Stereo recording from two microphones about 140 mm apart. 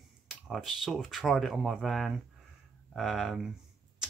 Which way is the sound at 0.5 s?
Centre (ahead or behind).